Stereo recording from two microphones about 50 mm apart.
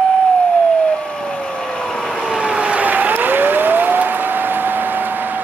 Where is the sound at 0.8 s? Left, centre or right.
Centre.